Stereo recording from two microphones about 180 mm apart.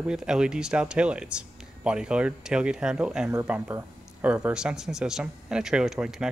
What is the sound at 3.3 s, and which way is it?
Speech, 15° right (ahead or behind).